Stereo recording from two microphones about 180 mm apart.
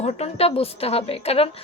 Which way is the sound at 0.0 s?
35° left (ahead or behind).